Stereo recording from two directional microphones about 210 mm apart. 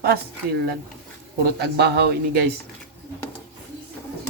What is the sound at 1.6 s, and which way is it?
Speech, 50° right (ahead or behind).